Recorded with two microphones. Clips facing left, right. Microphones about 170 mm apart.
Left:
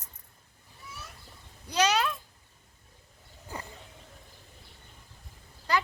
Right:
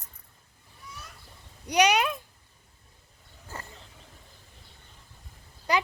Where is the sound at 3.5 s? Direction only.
15° left (ahead or behind).